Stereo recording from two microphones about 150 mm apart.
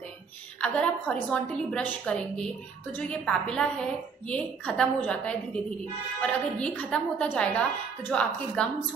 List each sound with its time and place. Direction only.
0.6 s a woman's voice: 10° left (ahead or behind)